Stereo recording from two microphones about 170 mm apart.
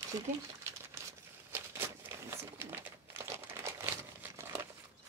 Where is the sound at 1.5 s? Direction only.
15° right (ahead or behind).